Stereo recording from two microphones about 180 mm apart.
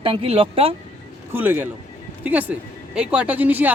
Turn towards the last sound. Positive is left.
turn(degrees=-10)  # may be behind; listen again after turning